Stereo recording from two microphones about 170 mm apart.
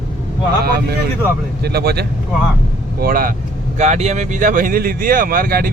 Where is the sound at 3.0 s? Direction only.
55° right (ahead or behind).